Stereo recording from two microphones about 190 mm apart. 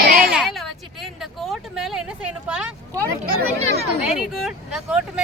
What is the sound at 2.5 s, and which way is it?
Speech, 5° right (ahead or behind).